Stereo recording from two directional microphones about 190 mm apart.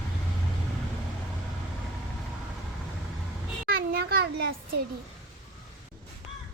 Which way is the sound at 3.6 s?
50° right (ahead or behind).